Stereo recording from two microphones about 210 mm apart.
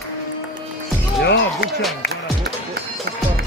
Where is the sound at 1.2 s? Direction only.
50° left (ahead or behind).